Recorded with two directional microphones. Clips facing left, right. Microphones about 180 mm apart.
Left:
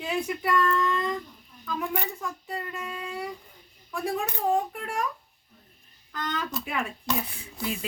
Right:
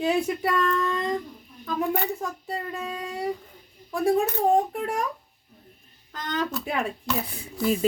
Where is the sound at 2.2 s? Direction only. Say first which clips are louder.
Right 3 dB; 35° right (ahead or behind).